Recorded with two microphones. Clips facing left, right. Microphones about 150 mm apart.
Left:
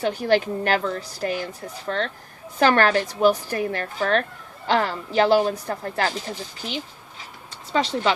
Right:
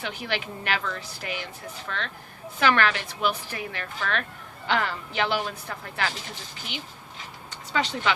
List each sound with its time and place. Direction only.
0.0 s a woman's voice: 40° left (ahead or behind)